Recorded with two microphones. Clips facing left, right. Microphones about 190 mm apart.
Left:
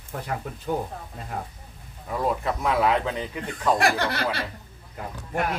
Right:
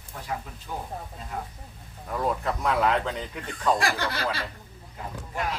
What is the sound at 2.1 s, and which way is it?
Speech, 5° left (ahead or behind).